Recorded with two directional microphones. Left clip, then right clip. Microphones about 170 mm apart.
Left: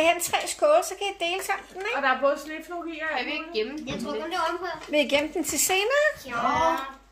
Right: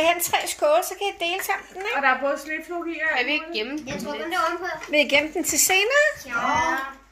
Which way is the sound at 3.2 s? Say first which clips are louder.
Right 4 dB; 55° right (ahead or behind).